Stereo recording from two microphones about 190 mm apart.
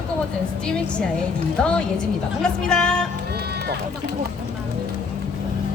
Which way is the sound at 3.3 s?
60° right (ahead or behind).